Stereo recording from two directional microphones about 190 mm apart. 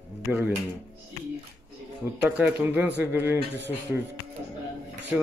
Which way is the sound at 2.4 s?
10° right (ahead or behind).